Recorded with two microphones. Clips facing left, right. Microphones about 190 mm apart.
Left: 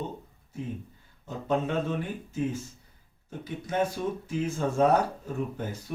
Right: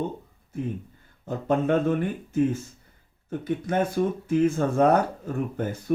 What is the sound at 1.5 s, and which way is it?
Speech, 55° right (ahead or behind).